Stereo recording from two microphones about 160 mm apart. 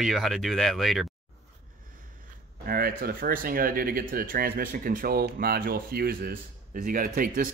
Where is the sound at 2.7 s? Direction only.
65° right (ahead or behind).